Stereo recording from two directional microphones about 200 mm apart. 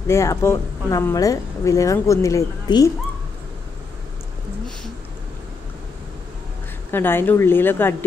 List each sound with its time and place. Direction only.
0.1 s speech: 15° left (ahead or behind)
6.9 s speech: 10° left (ahead or behind)